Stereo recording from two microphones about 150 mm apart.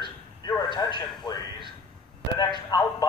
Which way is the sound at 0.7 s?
30° left (ahead or behind).